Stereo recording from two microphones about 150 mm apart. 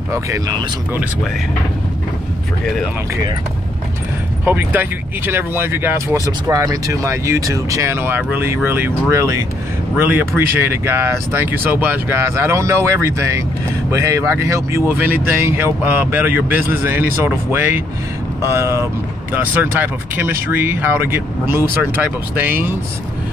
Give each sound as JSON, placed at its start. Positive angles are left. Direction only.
{"t": 0.1, "sound": "speech", "side_deg": -20}
{"t": 4.5, "sound": "speech", "side_deg": -15}